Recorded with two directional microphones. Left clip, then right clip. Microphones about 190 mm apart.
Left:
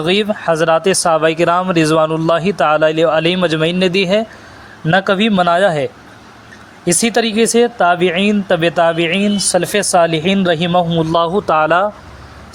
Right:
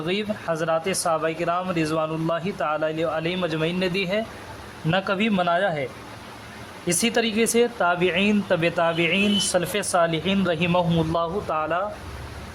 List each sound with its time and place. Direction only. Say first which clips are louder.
0.0 s speech: left 12 dB; 40° left (ahead or behind); by 11.0 s 25° left (ahead or behind)
11.0 s speech: left 11 dB; 40° left (ahead or behind)